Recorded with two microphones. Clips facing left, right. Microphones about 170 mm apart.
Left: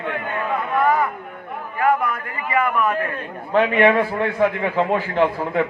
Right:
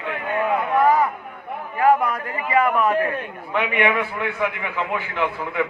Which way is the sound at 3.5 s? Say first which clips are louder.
Left 6 dB; 30° left (ahead or behind).